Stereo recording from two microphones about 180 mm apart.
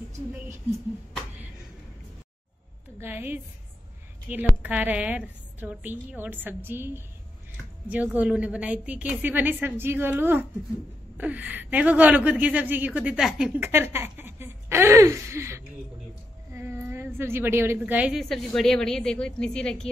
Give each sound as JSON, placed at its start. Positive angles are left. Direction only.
{"t": 3.0, "sound": "a woman's voice", "side_deg": -10}